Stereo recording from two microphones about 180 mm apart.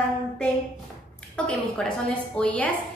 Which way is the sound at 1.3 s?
5° left (ahead or behind).